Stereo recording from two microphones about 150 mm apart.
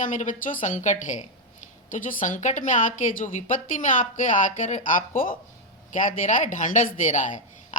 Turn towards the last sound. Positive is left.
turn(degrees=55)  # may be behind; listen again after turning